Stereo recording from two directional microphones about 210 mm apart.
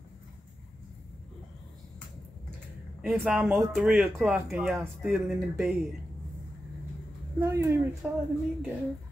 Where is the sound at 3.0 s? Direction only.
5° right (ahead or behind).